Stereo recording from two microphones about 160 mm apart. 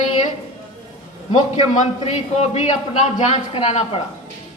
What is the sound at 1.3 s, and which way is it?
Speech, 50° left (ahead or behind).